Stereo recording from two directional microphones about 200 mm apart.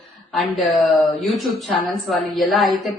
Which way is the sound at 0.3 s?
Centre (ahead or behind).